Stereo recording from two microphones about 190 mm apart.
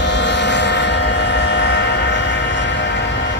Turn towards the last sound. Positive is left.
turn(degrees=65)  # may be behind; listen again after turning